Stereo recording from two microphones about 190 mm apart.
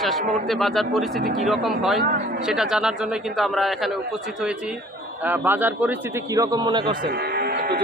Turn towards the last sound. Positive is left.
turn(degrees=-25)  # may be behind; listen again after turning